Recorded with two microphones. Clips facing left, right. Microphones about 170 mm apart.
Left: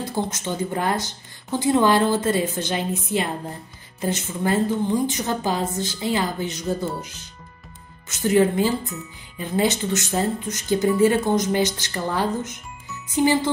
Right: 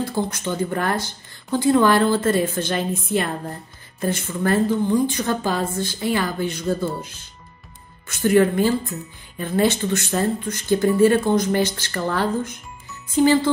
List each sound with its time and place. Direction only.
0.0 s a woman's voice: 20° left (ahead or behind)